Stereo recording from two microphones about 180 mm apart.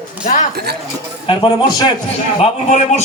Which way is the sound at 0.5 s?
65° right (ahead or behind).